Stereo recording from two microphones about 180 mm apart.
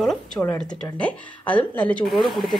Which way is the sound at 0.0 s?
Centre (ahead or behind).